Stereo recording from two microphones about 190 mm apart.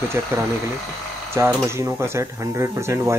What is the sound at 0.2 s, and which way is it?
Speech, 15° right (ahead or behind).